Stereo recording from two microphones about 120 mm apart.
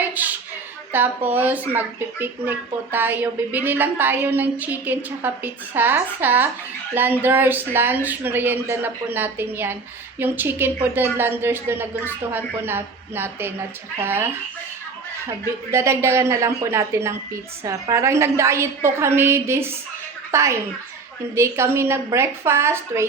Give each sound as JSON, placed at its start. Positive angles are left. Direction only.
{"t": 0.0, "sound": "a sound", "side_deg": -15}
{"t": 0.9, "sound": "a woman's voice", "side_deg": -15}
{"t": 15.7, "sound": "a woman's voice", "side_deg": -20}